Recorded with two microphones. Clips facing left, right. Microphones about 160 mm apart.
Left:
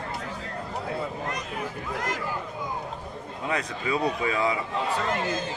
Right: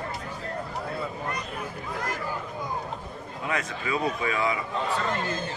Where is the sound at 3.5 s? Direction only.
30° left (ahead or behind).